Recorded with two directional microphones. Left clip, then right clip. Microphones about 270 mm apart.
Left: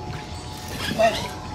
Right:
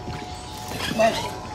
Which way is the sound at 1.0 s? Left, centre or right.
Right.